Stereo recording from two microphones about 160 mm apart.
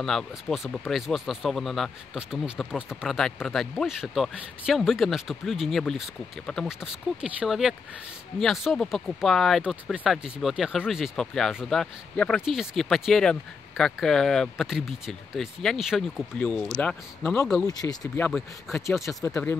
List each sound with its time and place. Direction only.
0.0 s speech: centre (ahead or behind)
16.3 s speech: 10° left (ahead or behind)
17.6 s speech: 25° left (ahead or behind)
18.3 s speech: centre (ahead or behind)